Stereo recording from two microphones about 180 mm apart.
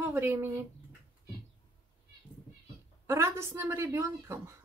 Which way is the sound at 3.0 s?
15° right (ahead or behind).